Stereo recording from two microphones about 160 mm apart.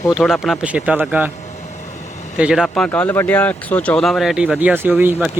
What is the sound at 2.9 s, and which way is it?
Speech, 15° left (ahead or behind).